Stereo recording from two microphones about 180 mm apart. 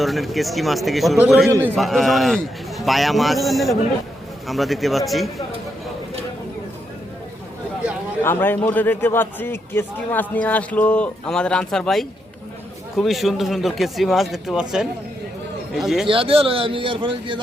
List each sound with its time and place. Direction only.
0.0 s a man's voice: centre (ahead or behind)
1.5 s a man's voice: 15° right (ahead or behind)
1.7 s a man's voice: centre (ahead or behind)
8.2 s a man's voice: 10° left (ahead or behind)
16.0 s speech: 30° right (ahead or behind)